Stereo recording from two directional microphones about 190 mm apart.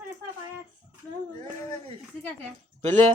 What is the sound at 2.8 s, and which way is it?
Speech, 40° right (ahead or behind).